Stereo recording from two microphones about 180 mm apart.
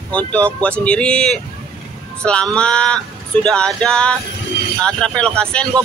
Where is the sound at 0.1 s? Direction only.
5° left (ahead or behind).